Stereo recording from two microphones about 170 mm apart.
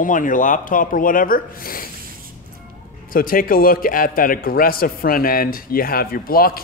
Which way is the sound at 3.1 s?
55° left (ahead or behind).